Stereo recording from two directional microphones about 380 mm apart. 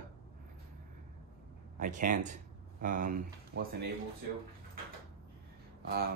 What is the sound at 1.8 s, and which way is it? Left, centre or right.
Speech, centre.